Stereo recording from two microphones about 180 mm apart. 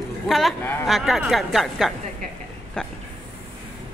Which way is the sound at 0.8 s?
Centre (ahead or behind).